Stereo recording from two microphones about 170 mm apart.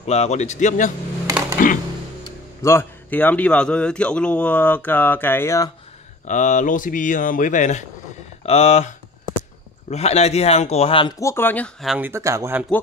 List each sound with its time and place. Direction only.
0.0 s speech: 40° left (ahead or behind)
2.2 s speech: 15° left (ahead or behind)
6.2 s speech: 45° left (ahead or behind); by 11.1 s 30° left (ahead or behind)
11.1 s speech: 15° left (ahead or behind)
12.0 s speech: 15° right (ahead or behind)